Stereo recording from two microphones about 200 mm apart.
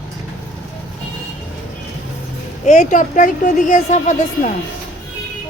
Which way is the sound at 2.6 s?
35° left (ahead or behind).